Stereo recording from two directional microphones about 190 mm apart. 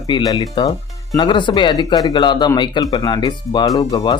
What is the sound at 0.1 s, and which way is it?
Speech, 20° left (ahead or behind).